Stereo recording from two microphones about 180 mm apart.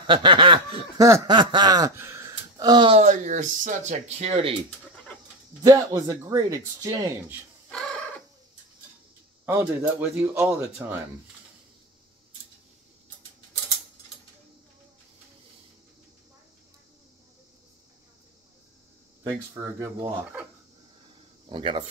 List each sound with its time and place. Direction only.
0.0 s speech: 30° right (ahead or behind)
3.0 s speech: 45° right (ahead or behind)
5.6 s speech: 20° right (ahead or behind)
9.5 s speech: 10° right (ahead or behind)
19.5 s speech: 20° right (ahead or behind)
21.5 s speech: 30° right (ahead or behind)